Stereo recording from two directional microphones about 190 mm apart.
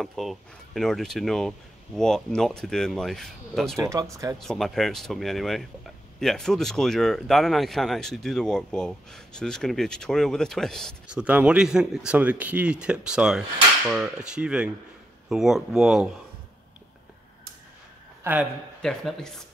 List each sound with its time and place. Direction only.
0.0 s speech: centre (ahead or behind)
3.7 s speech: 15° right (ahead or behind)
4.4 s speech: centre (ahead or behind)
18.2 s a man's voice: 10° right (ahead or behind)
18.8 s speech: 5° left (ahead or behind)